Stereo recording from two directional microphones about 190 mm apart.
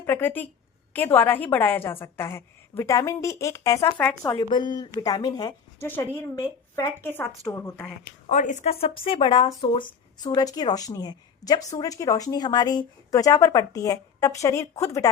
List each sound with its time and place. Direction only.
0.0 s a woman's voice: 10° left (ahead or behind)
4.5 s a woman's voice: 20° left (ahead or behind)
8.3 s a woman's voice: 40° left (ahead or behind)
8.8 s a woman's voice: 30° left (ahead or behind)